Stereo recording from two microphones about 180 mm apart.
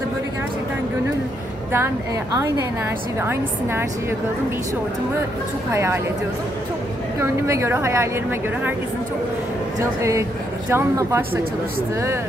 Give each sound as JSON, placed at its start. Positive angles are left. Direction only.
{"t": 3.2, "sound": "a woman's voice", "side_deg": -15}
{"t": 5.7, "sound": "a woman's voice", "side_deg": -15}
{"t": 7.2, "sound": "a woman's voice", "side_deg": -15}
{"t": 9.8, "sound": "a woman's voice", "side_deg": -15}